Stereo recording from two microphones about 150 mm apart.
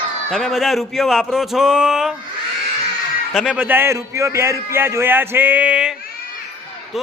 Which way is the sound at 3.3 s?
5° right (ahead or behind).